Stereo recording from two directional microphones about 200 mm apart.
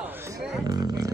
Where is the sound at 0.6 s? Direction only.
20° right (ahead or behind).